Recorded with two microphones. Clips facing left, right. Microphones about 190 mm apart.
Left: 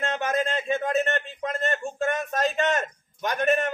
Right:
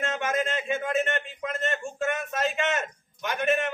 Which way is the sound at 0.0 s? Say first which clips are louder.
Left 2 dB; 35° left (ahead or behind).